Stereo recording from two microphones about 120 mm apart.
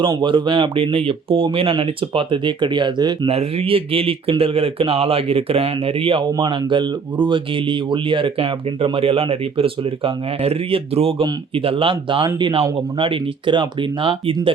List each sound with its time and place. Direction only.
0.2 s speech: 40° right (ahead or behind)
3.2 s a man's voice: 55° right (ahead or behind)